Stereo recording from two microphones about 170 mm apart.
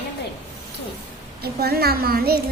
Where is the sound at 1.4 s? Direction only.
65° right (ahead or behind).